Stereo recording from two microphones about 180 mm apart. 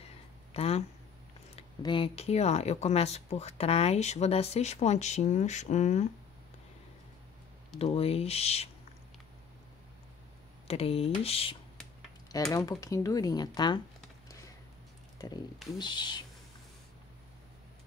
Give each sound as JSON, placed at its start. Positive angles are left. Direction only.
{"t": 0.5, "sound": "speech", "side_deg": 35}
{"t": 7.8, "sound": "speech", "side_deg": 35}
{"t": 10.7, "sound": "speech", "side_deg": 35}
{"t": 12.5, "sound": "speech", "side_deg": 20}
{"t": 15.1, "sound": "speech", "side_deg": 20}